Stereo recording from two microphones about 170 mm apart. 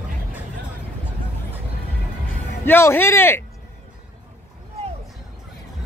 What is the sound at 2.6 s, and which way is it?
Speech, 15° left (ahead or behind).